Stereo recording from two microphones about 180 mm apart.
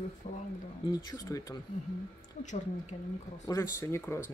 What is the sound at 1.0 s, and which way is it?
Speech, 20° left (ahead or behind).